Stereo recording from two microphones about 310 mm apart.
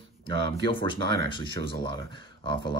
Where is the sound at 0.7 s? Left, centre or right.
Centre.